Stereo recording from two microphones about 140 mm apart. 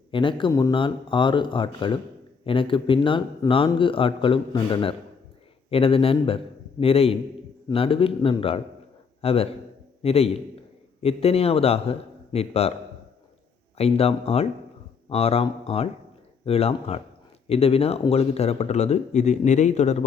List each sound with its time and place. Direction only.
0.1 s a man's voice: 35° left (ahead or behind)
13.7 s speech: 45° left (ahead or behind)